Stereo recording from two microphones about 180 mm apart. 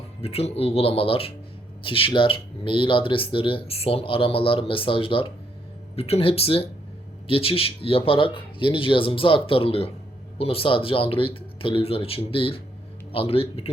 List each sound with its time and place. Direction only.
0.2 s speech: 35° left (ahead or behind)